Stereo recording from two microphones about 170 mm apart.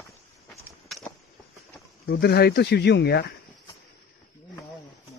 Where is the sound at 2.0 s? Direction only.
70° left (ahead or behind).